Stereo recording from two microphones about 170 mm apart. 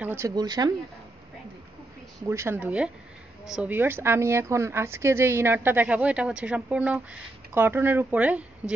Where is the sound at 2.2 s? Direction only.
15° right (ahead or behind).